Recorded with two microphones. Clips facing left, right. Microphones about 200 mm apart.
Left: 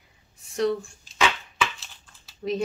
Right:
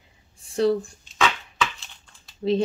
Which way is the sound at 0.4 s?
30° right (ahead or behind).